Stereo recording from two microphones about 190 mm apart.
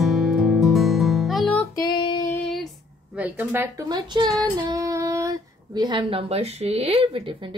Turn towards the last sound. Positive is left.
turn(degrees=-30)  # may be behind; listen again after turning